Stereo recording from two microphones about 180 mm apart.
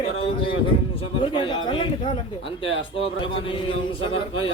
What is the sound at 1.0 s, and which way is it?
A man's voice, 30° left (ahead or behind).